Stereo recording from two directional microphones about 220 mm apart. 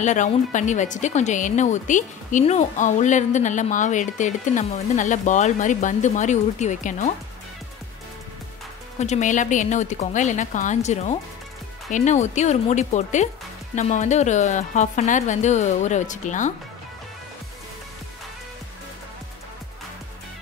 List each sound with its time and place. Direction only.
0.0 s speech: 35° left (ahead or behind)
9.0 s speech: 35° left (ahead or behind)